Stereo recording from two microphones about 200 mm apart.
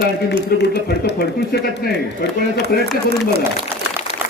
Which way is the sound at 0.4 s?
55° left (ahead or behind).